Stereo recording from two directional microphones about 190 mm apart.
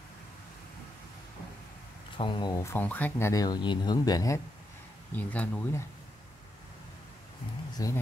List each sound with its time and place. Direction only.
2.1 s speech: 25° left (ahead or behind)
7.7 s speech: 20° left (ahead or behind)